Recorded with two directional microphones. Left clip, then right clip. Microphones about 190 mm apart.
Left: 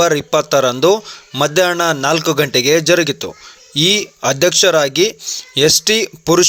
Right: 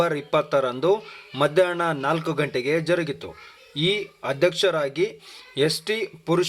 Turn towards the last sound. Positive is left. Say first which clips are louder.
# left 10 dB
turn(degrees=30)  # may be behind; listen again after turning